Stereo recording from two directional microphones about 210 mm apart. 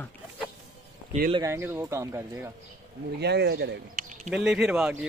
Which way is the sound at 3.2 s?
50° right (ahead or behind).